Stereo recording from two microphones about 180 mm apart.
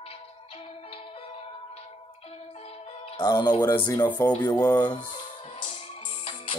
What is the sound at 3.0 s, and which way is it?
Speech, 25° left (ahead or behind).